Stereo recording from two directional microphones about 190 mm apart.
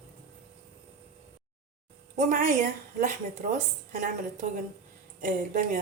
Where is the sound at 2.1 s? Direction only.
45° right (ahead or behind).